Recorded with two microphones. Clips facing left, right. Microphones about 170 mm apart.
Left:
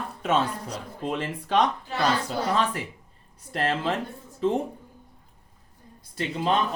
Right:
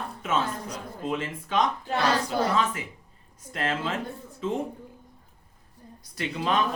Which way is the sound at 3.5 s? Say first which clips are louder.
Left 3 dB; 35° left (ahead or behind).